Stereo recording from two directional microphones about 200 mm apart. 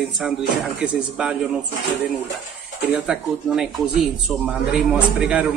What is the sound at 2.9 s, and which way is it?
A man's voice, 5° right (ahead or behind).